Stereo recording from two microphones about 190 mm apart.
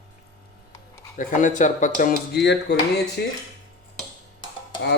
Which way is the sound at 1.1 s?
45° left (ahead or behind).